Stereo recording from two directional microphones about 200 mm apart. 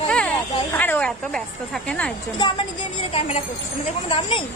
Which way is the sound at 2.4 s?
20° left (ahead or behind).